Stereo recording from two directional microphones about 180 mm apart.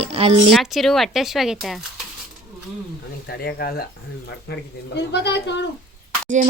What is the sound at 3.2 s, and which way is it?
Speech, 65° left (ahead or behind).